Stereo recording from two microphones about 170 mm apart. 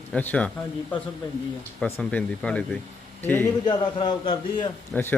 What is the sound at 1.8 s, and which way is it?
Speech, 10° left (ahead or behind).